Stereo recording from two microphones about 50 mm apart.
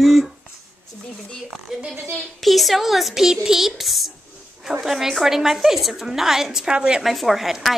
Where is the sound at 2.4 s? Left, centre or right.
Centre.